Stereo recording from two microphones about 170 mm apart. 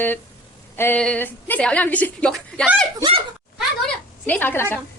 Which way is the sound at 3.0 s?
30° right (ahead or behind).